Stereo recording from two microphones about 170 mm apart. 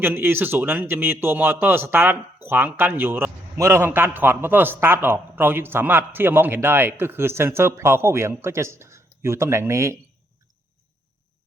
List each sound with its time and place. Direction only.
0.0 s a man's voice: 10° right (ahead or behind)